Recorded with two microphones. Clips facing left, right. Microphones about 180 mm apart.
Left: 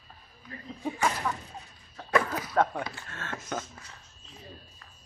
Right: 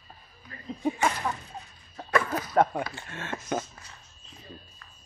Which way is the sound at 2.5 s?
15° right (ahead or behind).